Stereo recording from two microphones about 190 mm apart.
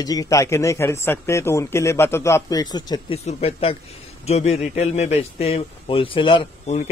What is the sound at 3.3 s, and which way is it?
A man's voice, 30° left (ahead or behind).